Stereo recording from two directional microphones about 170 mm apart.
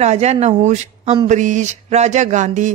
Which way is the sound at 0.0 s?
40° right (ahead or behind).